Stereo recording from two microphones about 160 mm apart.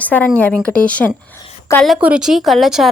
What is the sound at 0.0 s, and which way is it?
A woman's voice, 10° left (ahead or behind).